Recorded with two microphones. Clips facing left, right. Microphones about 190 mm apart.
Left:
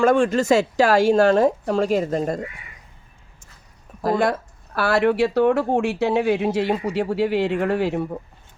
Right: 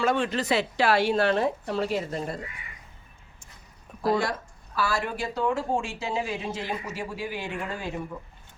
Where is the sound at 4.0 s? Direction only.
50° left (ahead or behind).